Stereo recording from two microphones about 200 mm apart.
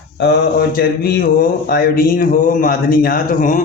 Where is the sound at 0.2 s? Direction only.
55° left (ahead or behind).